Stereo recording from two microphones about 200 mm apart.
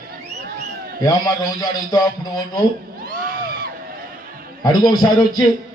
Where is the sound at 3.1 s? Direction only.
45° right (ahead or behind).